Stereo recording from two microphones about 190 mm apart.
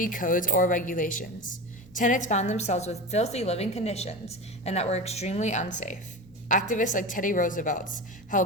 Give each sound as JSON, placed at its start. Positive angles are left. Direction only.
{"t": 0.0, "sound": "a woman's voice", "side_deg": 45}